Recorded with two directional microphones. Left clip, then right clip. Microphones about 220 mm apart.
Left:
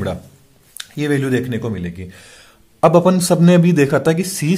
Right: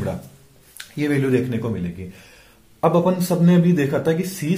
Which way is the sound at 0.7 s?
25° left (ahead or behind).